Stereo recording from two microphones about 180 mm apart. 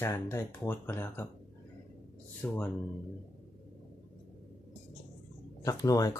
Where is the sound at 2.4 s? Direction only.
10° left (ahead or behind).